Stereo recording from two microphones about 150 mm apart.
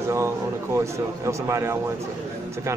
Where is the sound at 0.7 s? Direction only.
20° right (ahead or behind).